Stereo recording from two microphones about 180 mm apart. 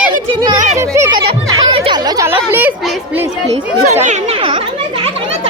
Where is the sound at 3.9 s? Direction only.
40° right (ahead or behind).